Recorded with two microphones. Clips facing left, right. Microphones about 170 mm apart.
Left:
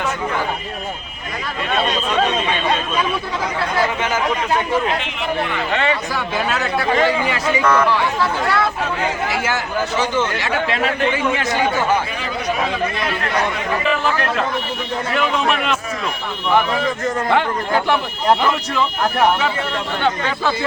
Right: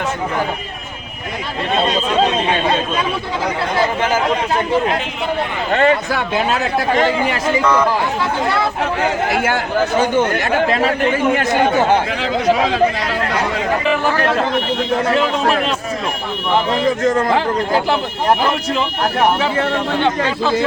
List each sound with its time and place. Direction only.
1.7 s speech: 30° right (ahead or behind)
5.7 s speech: 45° right (ahead or behind)
6.7 s speech: 45° right (ahead or behind)
8.2 s speech: 20° right (ahead or behind)
9.3 s speech: 55° right (ahead or behind)
11.9 s speech: 90° right
14.3 s a man's voice: 75° right (ahead or behind)
15.1 s speech: 35° right (ahead or behind)
17.2 s speech: 35° right (ahead or behind)